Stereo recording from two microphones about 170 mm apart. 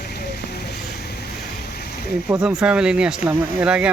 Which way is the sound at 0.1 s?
70° left (ahead or behind).